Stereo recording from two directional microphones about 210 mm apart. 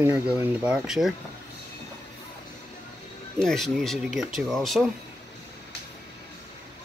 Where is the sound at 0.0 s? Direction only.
10° right (ahead or behind).